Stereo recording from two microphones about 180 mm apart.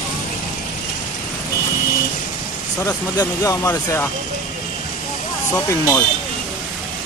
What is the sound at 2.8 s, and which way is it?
Speech, 20° left (ahead or behind).